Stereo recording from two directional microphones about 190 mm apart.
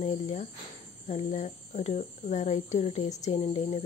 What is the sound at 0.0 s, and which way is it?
Speech, 40° left (ahead or behind).